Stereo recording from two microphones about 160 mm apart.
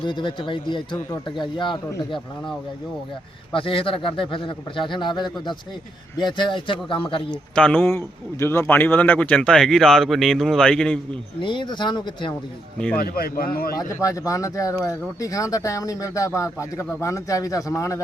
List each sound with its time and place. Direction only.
0.0 s speech: 30° left (ahead or behind)
2.1 s a man's voice: centre (ahead or behind)
3.5 s speech: 35° left (ahead or behind)
7.5 s a man's voice: 5° left (ahead or behind)
11.3 s speech: 30° left (ahead or behind)
13.0 s speech: 70° left (ahead or behind)
13.7 s speech: 20° left (ahead or behind)